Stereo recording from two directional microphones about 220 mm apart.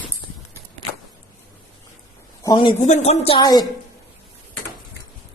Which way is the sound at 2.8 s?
30° left (ahead or behind).